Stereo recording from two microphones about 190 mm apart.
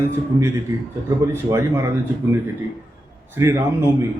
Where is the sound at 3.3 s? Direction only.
15° right (ahead or behind).